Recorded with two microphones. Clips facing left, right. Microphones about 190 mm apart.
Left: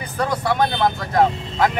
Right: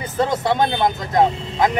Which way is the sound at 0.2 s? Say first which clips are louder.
Right 2 dB; 20° right (ahead or behind).